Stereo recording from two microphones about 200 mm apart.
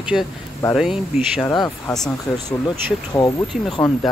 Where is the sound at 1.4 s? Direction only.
20° left (ahead or behind).